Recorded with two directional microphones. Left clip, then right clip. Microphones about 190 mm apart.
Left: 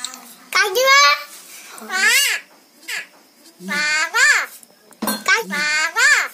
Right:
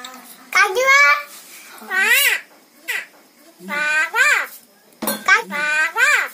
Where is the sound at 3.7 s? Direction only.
10° right (ahead or behind).